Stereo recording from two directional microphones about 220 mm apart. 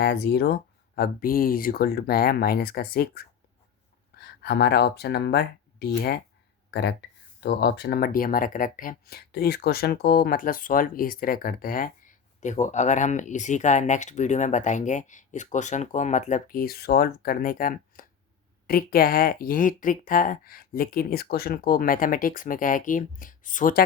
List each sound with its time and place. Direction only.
0.0 s speech: 45° left (ahead or behind)